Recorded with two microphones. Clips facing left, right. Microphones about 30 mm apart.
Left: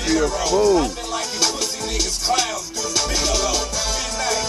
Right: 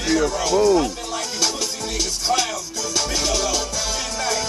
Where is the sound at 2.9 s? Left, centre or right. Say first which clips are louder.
Left 1 dB; centre.